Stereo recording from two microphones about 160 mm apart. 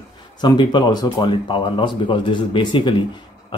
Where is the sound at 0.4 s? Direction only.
30° left (ahead or behind).